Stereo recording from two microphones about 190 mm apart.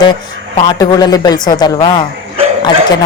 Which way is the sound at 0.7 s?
20° left (ahead or behind).